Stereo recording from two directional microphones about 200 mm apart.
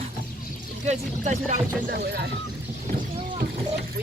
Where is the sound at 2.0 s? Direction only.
55° right (ahead or behind).